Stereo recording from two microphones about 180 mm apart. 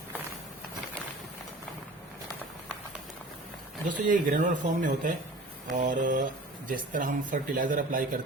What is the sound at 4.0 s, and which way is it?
Speech, 45° right (ahead or behind).